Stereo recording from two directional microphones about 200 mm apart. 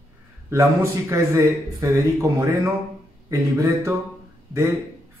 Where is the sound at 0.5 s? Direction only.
15° right (ahead or behind).